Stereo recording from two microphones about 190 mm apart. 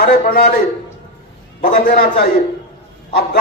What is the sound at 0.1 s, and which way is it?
Speech, 55° left (ahead or behind).